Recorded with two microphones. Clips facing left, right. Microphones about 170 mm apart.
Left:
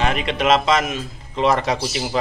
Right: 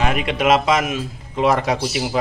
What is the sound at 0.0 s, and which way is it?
Speech, 5° right (ahead or behind).